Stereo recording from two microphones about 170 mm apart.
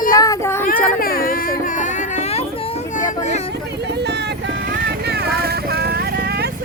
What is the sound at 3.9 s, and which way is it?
Vehicle, 80° right.